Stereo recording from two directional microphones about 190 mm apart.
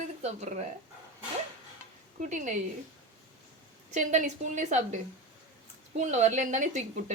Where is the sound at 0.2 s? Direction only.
35° right (ahead or behind).